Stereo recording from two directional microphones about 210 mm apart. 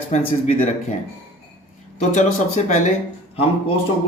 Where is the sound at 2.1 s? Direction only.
35° left (ahead or behind).